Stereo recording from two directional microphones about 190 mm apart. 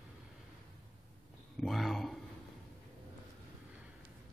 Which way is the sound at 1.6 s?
Centre (ahead or behind).